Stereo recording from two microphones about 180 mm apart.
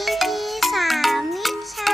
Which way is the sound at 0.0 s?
Centre (ahead or behind).